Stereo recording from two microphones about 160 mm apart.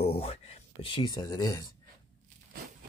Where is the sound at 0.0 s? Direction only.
40° left (ahead or behind); by 1.7 s 20° left (ahead or behind).